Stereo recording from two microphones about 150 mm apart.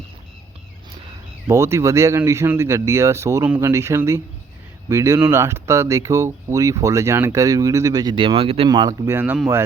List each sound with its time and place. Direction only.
1.5 s speech: 20° right (ahead or behind); by 8.7 s 40° right (ahead or behind)
8.7 s speech: 25° right (ahead or behind)
9.0 s speech: 15° right (ahead or behind)